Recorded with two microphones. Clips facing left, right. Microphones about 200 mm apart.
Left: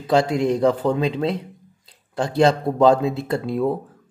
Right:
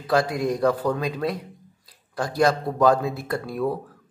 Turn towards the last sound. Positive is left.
turn(degrees=25)  # may be behind; listen again after turning